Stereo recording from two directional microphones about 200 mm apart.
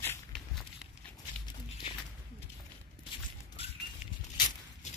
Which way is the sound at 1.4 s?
25° left (ahead or behind).